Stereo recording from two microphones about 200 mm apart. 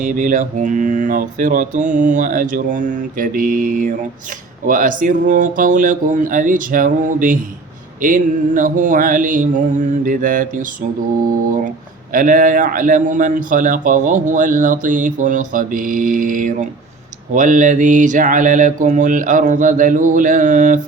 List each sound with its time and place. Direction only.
0.0 s a man's voice: 40° right (ahead or behind)
12.1 s a man's voice: 45° right (ahead or behind)